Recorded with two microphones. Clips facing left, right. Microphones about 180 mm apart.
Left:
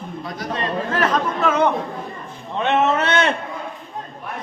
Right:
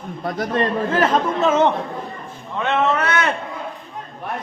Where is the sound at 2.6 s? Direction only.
25° left (ahead or behind).